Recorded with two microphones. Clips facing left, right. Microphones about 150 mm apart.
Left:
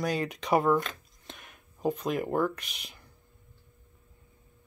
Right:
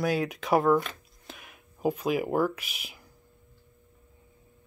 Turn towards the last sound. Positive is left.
turn(degrees=-5)  # may be behind; listen again after turning